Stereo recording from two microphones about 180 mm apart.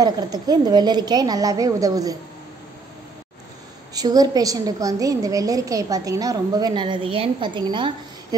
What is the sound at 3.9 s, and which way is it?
A woman's voice, 20° right (ahead or behind).